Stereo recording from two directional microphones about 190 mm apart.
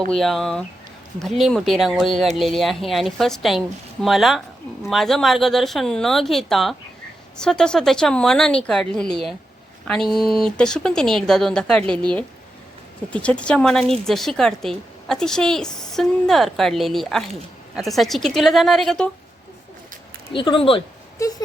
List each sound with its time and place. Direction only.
0.1 s a woman's voice: centre (ahead or behind)
13.2 s a woman's voice: 5° left (ahead or behind)
20.3 s speech: 25° left (ahead or behind)
21.2 s a sound: 15° left (ahead or behind)